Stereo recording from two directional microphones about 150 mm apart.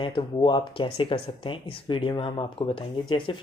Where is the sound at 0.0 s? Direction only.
30° left (ahead or behind).